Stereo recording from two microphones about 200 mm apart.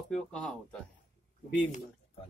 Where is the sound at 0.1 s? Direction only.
5° left (ahead or behind).